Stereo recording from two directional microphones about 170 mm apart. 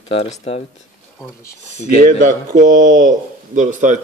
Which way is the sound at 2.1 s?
45° right (ahead or behind).